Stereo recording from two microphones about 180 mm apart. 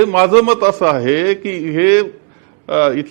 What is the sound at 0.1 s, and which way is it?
A man's voice, 15° right (ahead or behind).